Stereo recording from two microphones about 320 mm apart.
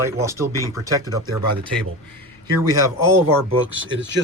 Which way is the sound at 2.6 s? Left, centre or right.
Centre.